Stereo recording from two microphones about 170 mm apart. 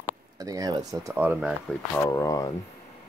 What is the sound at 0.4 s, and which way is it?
Speech, 20° right (ahead or behind).